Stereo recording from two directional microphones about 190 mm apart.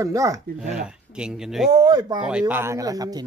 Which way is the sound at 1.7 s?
20° right (ahead or behind).